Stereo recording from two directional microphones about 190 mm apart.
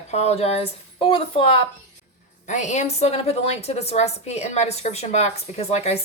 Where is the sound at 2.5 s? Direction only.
40° left (ahead or behind).